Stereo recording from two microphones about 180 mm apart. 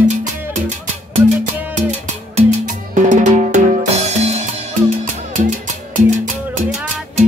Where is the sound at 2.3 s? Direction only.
45° right (ahead or behind).